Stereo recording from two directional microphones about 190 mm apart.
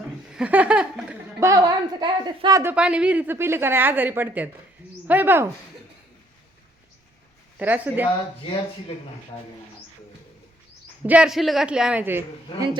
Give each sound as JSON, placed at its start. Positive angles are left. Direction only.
{"t": 0.3, "sound": "speech", "side_deg": -5}
{"t": 1.5, "sound": "a woman's voice", "side_deg": -20}
{"t": 2.7, "sound": "speech", "side_deg": -5}
{"t": 7.6, "sound": "speech", "side_deg": -10}
{"t": 11.0, "sound": "speech", "side_deg": -5}